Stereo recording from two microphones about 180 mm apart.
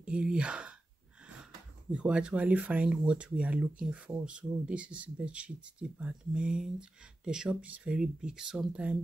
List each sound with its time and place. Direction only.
0.0 s speech: 5° right (ahead or behind)